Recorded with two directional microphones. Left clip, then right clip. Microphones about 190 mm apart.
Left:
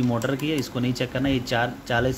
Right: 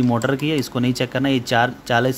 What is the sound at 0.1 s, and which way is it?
Speech, 25° right (ahead or behind).